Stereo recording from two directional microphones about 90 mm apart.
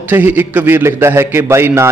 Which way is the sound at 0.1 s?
20° right (ahead or behind).